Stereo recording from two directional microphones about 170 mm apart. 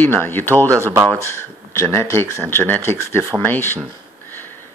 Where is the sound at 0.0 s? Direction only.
10° left (ahead or behind).